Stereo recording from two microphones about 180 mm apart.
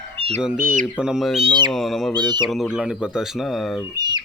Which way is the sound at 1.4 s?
25° right (ahead or behind).